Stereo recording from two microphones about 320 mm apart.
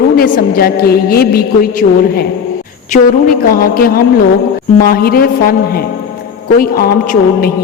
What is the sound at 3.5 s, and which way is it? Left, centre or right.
A woman's voice, left.